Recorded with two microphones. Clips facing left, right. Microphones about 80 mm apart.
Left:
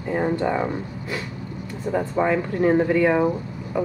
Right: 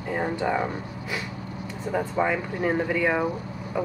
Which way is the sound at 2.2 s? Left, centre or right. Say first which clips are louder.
Left 3 dB; centre.